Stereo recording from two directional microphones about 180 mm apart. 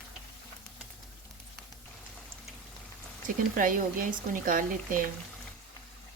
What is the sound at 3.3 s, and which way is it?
Speech, 50° right (ahead or behind).